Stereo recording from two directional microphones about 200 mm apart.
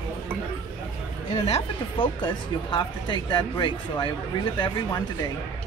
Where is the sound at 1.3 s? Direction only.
25° left (ahead or behind).